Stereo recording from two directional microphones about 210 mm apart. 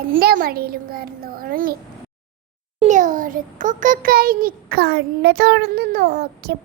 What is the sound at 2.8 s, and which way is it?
A child's voice, 35° right (ahead or behind).